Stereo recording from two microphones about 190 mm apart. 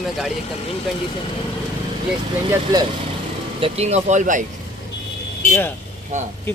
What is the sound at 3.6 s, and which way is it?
Speech, 35° right (ahead or behind).